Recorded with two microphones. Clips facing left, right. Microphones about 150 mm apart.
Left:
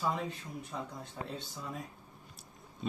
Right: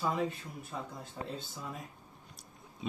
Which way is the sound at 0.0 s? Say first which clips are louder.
Right 2 dB; centre (ahead or behind).